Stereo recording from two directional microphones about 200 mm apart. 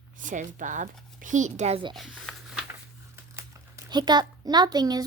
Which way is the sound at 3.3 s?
15° right (ahead or behind).